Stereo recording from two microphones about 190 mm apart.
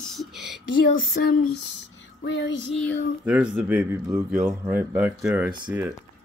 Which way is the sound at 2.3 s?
70° left (ahead or behind).